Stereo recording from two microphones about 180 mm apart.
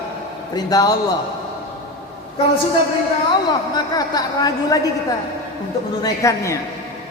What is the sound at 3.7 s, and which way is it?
Speech, 20° left (ahead or behind).